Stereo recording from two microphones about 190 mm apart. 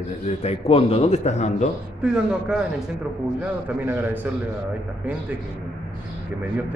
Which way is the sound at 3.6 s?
10° right (ahead or behind).